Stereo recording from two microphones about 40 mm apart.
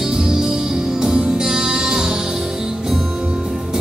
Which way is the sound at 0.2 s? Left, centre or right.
Centre.